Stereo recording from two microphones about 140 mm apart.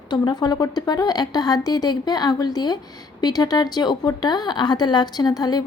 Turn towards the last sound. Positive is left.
turn(degrees=30)  # may be behind; listen again after turning